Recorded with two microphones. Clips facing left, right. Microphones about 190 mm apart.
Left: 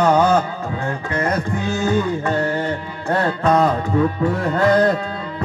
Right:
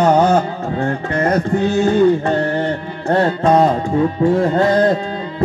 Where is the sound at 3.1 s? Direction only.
30° right (ahead or behind).